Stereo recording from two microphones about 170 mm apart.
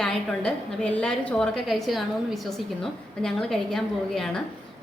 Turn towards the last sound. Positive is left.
turn(degrees=5)  # may be behind; listen again after turning